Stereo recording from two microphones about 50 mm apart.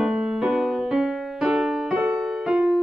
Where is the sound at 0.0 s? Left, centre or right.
Centre.